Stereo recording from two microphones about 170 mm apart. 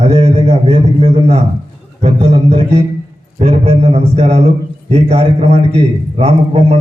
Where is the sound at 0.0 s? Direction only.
40° right (ahead or behind).